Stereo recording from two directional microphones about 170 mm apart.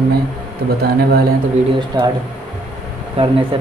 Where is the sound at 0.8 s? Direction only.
70° right (ahead or behind).